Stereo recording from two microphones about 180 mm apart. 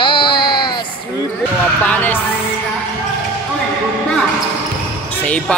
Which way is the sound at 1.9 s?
10° left (ahead or behind).